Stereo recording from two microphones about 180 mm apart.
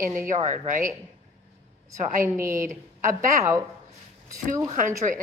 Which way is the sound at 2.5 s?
45° right (ahead or behind).